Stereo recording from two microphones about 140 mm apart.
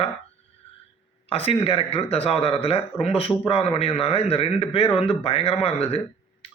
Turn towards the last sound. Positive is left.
turn(degrees=45)  # may be behind; listen again after turning